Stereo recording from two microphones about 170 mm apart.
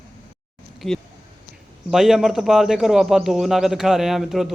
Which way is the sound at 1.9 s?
Centre (ahead or behind).